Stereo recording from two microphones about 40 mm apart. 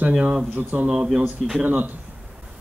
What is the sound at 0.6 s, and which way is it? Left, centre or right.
Speech, right.